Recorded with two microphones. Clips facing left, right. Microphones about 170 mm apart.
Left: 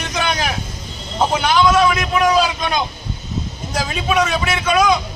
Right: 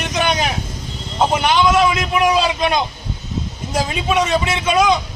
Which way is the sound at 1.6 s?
25° right (ahead or behind).